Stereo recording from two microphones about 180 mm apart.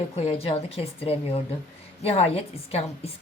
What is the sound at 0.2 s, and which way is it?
Speech, 30° left (ahead or behind).